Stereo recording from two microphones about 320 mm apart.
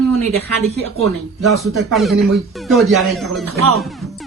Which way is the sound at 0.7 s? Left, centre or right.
Right.